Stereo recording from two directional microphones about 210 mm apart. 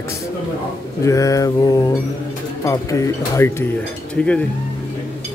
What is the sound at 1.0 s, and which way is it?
Mantra, 15° left (ahead or behind).